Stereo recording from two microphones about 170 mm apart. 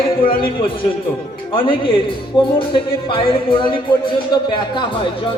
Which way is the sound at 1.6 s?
30° left (ahead or behind).